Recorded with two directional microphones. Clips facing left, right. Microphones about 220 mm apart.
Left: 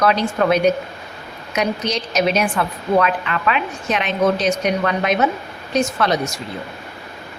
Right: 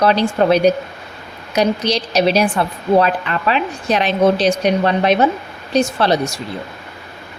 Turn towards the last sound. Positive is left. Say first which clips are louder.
# right 3 dB
turn(degrees=-30)  # may be behind; listen again after turning